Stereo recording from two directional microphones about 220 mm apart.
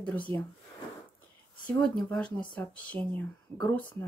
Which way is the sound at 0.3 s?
25° right (ahead or behind).